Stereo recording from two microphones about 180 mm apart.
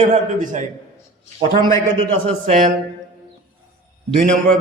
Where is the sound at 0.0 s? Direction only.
45° right (ahead or behind).